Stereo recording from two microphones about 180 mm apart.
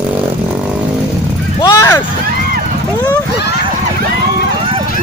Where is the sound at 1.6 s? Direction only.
15° left (ahead or behind).